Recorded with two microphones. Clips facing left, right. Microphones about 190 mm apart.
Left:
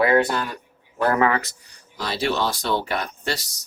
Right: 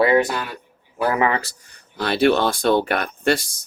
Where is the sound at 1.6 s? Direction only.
60° right (ahead or behind).